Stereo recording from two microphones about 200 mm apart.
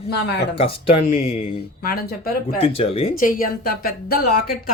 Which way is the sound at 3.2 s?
45° left (ahead or behind).